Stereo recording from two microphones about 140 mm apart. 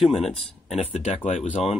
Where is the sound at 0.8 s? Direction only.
55° left (ahead or behind).